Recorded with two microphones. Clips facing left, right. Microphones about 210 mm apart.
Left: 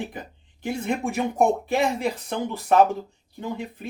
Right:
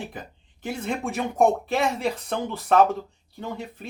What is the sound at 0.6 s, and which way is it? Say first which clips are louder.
Speech: left 2 dB; 15° left (ahead or behind).